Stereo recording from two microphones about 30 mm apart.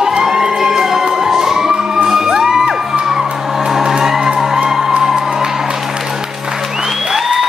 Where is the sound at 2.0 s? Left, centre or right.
Centre.